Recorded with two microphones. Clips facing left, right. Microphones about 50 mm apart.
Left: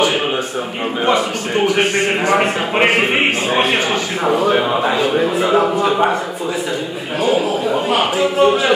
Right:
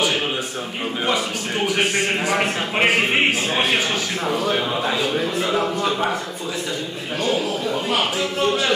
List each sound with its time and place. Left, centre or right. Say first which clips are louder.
1.0 s a man's voice: left 7 dB; centre
7.2 s a man's voice: left 6 dB; centre